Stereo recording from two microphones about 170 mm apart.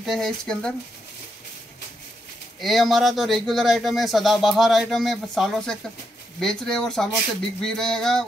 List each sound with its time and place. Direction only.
0.0 s speech: centre (ahead or behind)
2.6 s speech: centre (ahead or behind)